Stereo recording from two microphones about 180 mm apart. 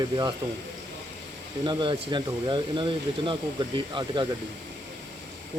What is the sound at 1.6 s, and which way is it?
Speech, 25° right (ahead or behind).